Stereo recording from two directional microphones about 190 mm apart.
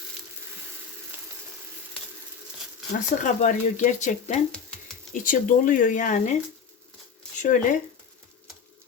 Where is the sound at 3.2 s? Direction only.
40° left (ahead or behind).